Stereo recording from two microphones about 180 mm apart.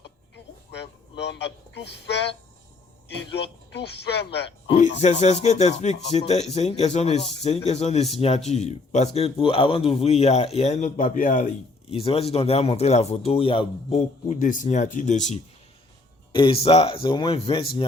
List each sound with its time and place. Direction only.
0.7 s a sound: 70° left (ahead or behind)
3.7 s speech: 70° left (ahead or behind)
4.8 s speech: 40° left (ahead or behind)
16.3 s speech: 30° left (ahead or behind)